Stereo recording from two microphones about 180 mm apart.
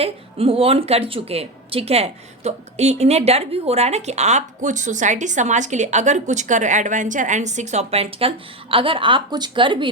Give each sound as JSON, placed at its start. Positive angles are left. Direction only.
{"t": 0.0, "sound": "a woman's voice", "side_deg": -30}